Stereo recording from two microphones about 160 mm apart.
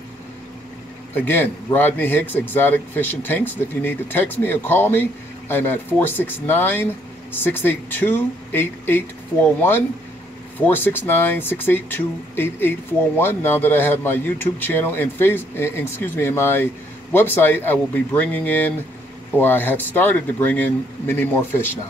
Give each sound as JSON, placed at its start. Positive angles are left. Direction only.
{"t": 1.1, "sound": "speech", "side_deg": 15}